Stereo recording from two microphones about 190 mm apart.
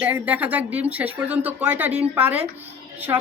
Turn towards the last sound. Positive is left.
turn(degrees=-15)  # may be behind; listen again after turning